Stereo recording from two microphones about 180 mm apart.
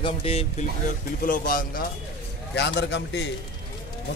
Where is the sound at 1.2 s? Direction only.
50° left (ahead or behind).